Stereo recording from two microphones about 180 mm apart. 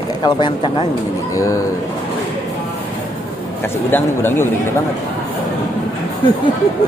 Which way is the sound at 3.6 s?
15° left (ahead or behind).